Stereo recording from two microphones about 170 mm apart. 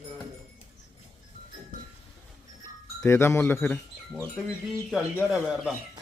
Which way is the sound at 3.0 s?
15° left (ahead or behind).